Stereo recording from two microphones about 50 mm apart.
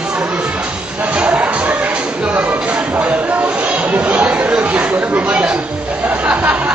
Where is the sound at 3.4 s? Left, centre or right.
Right.